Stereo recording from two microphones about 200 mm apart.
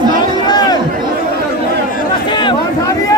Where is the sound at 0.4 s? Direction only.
20° left (ahead or behind).